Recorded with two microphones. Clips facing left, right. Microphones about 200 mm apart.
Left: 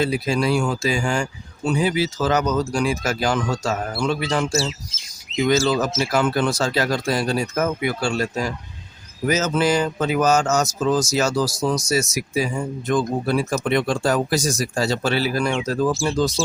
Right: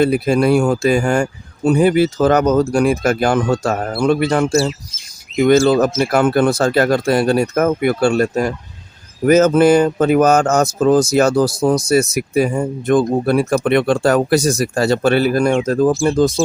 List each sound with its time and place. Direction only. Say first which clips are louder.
0.0 s speech: right 7 dB; 55° right (ahead or behind)